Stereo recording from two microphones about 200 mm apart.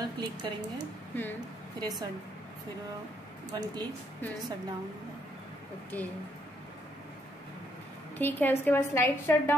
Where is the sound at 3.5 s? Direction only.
20° right (ahead or behind).